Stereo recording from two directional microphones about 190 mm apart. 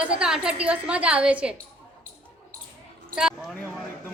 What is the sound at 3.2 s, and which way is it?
Speech, 5° right (ahead or behind).